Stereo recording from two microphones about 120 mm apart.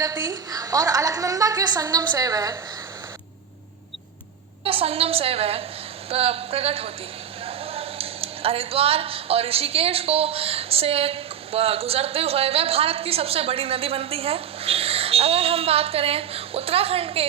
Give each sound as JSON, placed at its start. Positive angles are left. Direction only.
{"t": 0.0, "sound": "a woman's voice", "side_deg": -30}
{"t": 4.6, "sound": "speech", "side_deg": -55}